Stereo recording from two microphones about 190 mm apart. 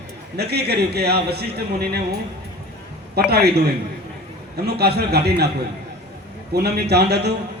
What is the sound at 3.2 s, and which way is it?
Speech, 55° right (ahead or behind).